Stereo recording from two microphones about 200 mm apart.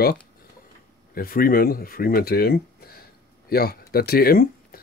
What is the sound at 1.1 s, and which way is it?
Speech, 45° left (ahead or behind).